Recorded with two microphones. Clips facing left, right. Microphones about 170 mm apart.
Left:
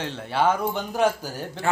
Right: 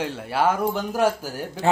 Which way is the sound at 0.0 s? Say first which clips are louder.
Right 1 dB; 5° right (ahead or behind).